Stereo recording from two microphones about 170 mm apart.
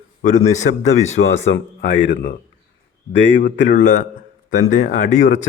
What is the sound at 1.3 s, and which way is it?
Speech, 90° left.